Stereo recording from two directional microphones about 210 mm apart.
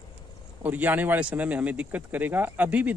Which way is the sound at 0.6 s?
10° right (ahead or behind).